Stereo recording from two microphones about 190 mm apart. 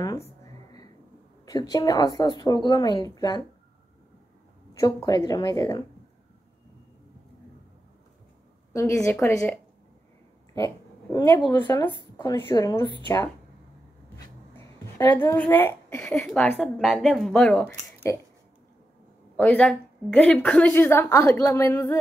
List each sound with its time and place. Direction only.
1.4 s a woman's voice: 20° left (ahead or behind)
4.7 s a woman's voice: 20° left (ahead or behind)
8.7 s a woman's voice: 15° left (ahead or behind)
10.5 s a sound: 20° left (ahead or behind)
11.4 s a woman's voice: 15° left (ahead or behind)
15.0 s a woman's voice: 15° left (ahead or behind)
19.3 s a woman's voice: 5° left (ahead or behind)